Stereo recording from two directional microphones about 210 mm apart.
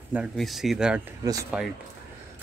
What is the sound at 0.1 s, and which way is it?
Speech, centre (ahead or behind).